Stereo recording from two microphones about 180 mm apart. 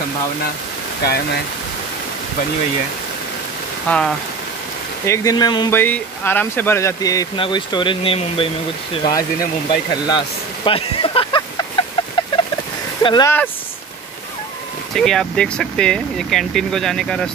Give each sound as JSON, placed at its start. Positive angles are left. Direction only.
{"t": 1.0, "sound": "speech", "side_deg": 60}
{"t": 3.9, "sound": "speech", "side_deg": 10}
{"t": 5.7, "sound": "speech", "side_deg": 10}
{"t": 13.0, "sound": "speech", "side_deg": 25}
{"t": 15.0, "sound": "speech", "side_deg": 5}